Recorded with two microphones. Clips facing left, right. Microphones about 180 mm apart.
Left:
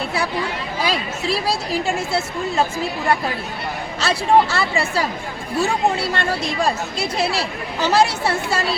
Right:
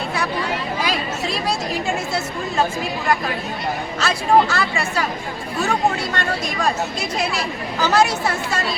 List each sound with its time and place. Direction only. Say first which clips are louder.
0.9 s speech: left 1 dB; 30° left (ahead or behind)
4.0 s speech: left 1 dB; 30° left (ahead or behind)